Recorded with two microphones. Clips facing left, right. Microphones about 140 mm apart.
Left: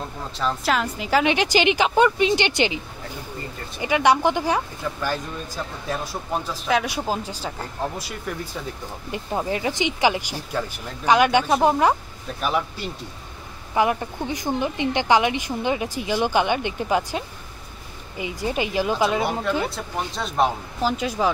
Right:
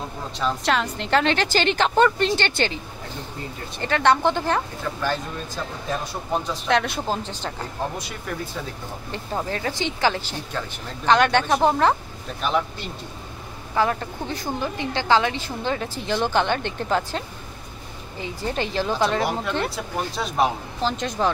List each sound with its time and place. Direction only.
0.4 s a woman's voice: centre (ahead or behind)
6.4 s speech: 5° left (ahead or behind)
9.1 s a woman's voice: 10° left (ahead or behind)
20.8 s a woman's voice: 10° left (ahead or behind)